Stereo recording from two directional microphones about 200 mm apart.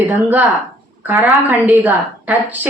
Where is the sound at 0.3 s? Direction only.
10° right (ahead or behind).